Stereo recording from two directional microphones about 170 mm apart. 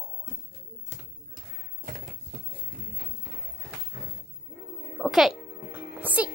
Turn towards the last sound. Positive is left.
turn(degrees=-10)  # may be behind; listen again after turning